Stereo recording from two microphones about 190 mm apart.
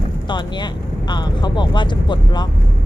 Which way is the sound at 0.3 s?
25° left (ahead or behind).